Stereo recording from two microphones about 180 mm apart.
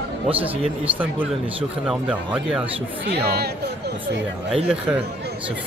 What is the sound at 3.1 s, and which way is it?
Speech, 60° right (ahead or behind).